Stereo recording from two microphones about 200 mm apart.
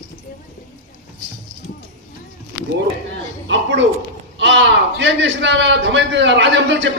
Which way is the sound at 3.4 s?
65° right (ahead or behind).